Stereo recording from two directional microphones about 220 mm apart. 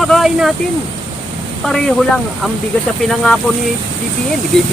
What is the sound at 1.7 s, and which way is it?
Speech, 5° left (ahead or behind).